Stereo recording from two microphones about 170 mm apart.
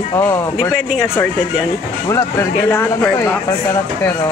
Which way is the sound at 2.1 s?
15° left (ahead or behind).